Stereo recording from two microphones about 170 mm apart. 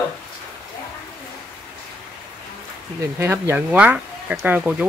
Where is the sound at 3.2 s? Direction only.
15° right (ahead or behind).